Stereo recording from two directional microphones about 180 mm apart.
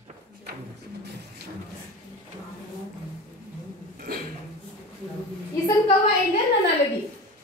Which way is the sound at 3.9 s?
55° right (ahead or behind).